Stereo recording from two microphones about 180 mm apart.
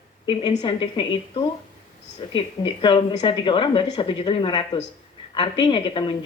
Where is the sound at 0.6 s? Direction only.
25° left (ahead or behind).